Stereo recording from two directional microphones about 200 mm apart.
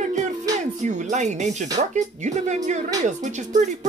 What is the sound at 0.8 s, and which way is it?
Speech, 35° right (ahead or behind).